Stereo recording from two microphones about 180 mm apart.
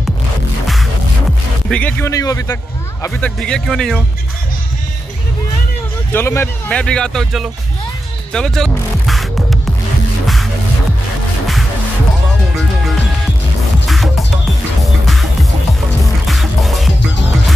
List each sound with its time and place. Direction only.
1.7 s a man's voice: 10° left (ahead or behind)
3.2 s speech: 5° left (ahead or behind)
6.1 s speech: 15° left (ahead or behind)
8.3 s music: 5° left (ahead or behind)
13.8 s music: centre (ahead or behind)
16.3 s music: centre (ahead or behind)